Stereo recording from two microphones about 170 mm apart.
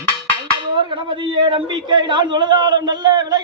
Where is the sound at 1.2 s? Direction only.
30° right (ahead or behind).